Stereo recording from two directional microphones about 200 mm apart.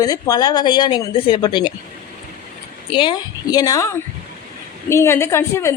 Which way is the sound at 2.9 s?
25° left (ahead or behind).